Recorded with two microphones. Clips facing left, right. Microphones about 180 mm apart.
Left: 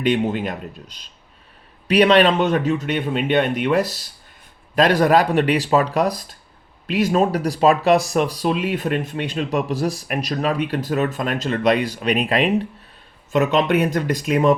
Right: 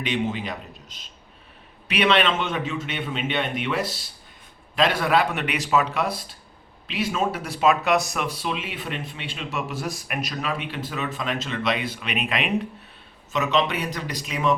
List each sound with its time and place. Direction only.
0.1 s speech: 50° left (ahead or behind)
1.9 s speech: 40° left (ahead or behind)
13.3 s speech: 55° left (ahead or behind)